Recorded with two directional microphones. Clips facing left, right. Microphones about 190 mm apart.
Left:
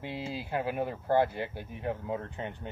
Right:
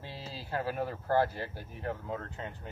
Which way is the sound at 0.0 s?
20° left (ahead or behind).